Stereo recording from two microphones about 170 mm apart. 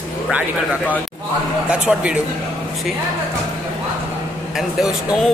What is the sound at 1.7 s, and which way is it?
Speech, 5° right (ahead or behind).